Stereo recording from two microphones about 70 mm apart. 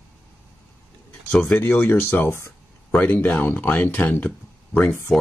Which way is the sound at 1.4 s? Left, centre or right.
Left.